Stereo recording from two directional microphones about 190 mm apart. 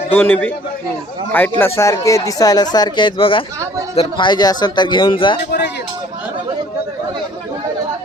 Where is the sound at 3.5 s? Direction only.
15° right (ahead or behind).